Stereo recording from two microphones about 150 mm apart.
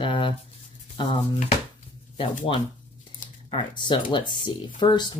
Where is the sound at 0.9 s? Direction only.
40° left (ahead or behind).